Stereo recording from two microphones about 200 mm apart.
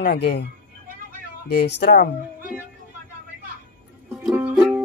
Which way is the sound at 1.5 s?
55° left (ahead or behind).